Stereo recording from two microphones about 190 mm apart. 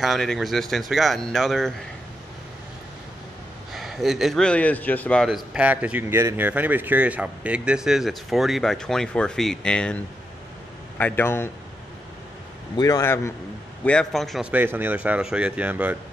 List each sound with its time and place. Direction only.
0.0 s a man's voice: centre (ahead or behind)
3.7 s a man's voice: centre (ahead or behind)
11.0 s a man's voice: 10° left (ahead or behind)
12.7 s a man's voice: 15° left (ahead or behind)
13.8 s speech: 5° left (ahead or behind)